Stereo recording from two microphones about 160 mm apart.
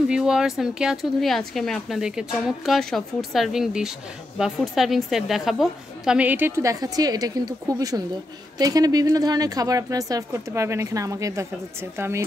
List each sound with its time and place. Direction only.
0.1 s a woman's voice: 5° right (ahead or behind)